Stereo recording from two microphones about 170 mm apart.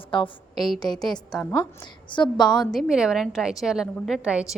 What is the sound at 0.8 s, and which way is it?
Speech, centre (ahead or behind).